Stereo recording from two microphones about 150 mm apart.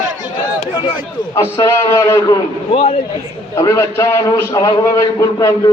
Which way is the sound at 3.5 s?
20° left (ahead or behind).